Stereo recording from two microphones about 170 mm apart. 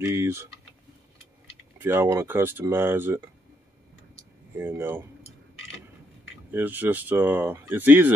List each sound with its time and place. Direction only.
0.0 s speech: 15° right (ahead or behind)
1.8 s speech: 15° right (ahead or behind)
4.6 s speech: 15° right (ahead or behind)
6.5 s speech: 10° right (ahead or behind)